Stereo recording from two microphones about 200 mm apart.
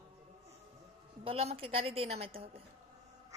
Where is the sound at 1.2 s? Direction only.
30° right (ahead or behind).